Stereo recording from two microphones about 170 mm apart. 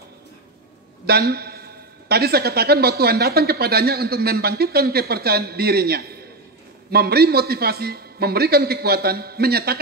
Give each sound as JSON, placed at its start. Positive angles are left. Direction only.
{"t": 1.0, "sound": "a man's voice", "side_deg": -65}